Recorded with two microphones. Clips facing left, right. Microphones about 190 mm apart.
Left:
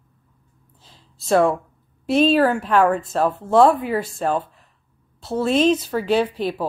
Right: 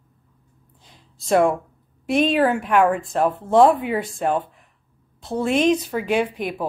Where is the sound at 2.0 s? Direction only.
15° right (ahead or behind).